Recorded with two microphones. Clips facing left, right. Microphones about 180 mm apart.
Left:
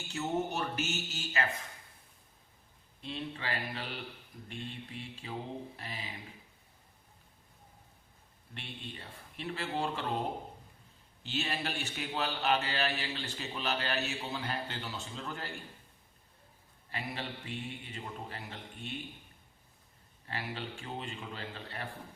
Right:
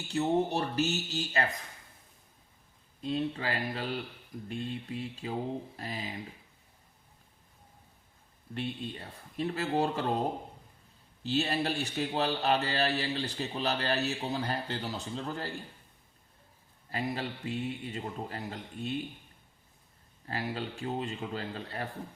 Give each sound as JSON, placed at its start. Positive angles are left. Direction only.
{"t": 0.1, "sound": "a man's voice", "side_deg": -35}
{"t": 3.0, "sound": "a man's voice", "side_deg": -40}
{"t": 8.5, "sound": "a man's voice", "side_deg": -40}
{"t": 11.2, "sound": "a man's voice", "side_deg": -40}
{"t": 16.9, "sound": "a man's voice", "side_deg": -40}
{"t": 20.2, "sound": "a man's voice", "side_deg": -40}